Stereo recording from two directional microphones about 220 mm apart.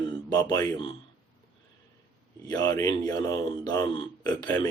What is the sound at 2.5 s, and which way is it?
Speech, 15° left (ahead or behind).